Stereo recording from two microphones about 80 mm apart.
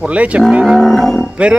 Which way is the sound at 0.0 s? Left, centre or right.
Centre.